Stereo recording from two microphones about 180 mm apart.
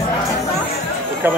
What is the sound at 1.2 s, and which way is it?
Speech, 10° right (ahead or behind).